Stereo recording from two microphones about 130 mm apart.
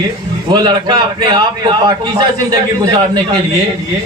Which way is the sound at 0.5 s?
35° right (ahead or behind).